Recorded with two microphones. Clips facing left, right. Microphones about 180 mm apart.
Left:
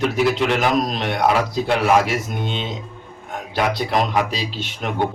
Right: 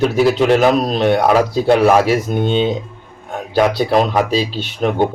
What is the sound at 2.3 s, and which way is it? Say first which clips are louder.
Speech: right 9 dB; 40° right (ahead or behind).